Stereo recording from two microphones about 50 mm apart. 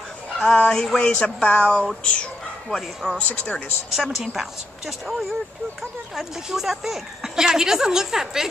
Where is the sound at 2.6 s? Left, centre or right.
Centre.